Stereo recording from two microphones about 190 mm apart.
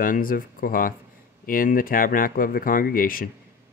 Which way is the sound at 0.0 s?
45° left (ahead or behind).